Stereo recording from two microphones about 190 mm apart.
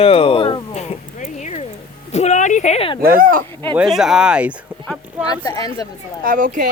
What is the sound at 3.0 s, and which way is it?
Speech, 50° right (ahead or behind).